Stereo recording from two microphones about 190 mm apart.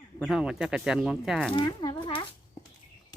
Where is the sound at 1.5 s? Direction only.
25° left (ahead or behind).